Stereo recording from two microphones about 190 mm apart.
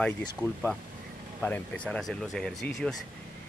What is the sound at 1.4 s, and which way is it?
Speech, 5° left (ahead or behind).